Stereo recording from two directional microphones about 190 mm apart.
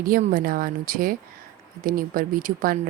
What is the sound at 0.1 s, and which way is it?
Speech, 45° right (ahead or behind).